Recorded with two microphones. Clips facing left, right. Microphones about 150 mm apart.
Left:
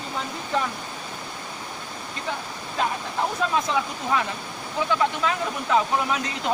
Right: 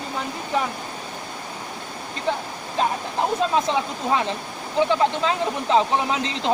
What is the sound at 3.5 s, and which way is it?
Speech, 30° right (ahead or behind).